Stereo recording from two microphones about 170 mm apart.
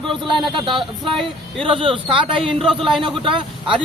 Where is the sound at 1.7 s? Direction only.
30° right (ahead or behind).